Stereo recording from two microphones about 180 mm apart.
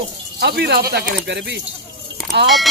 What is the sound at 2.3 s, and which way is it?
Speech, 75° right (ahead or behind).